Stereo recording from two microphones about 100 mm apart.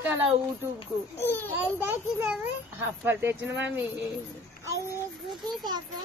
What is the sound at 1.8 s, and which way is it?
A child's voice, 20° right (ahead or behind).